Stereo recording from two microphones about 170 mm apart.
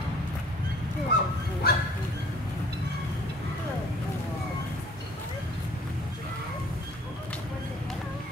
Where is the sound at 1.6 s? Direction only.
65° left (ahead or behind).